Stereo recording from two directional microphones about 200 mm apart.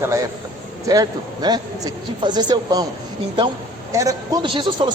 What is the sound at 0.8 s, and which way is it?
A man's voice, 20° right (ahead or behind).